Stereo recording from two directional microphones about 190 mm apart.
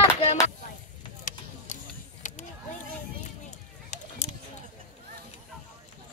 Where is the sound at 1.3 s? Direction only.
45° left (ahead or behind).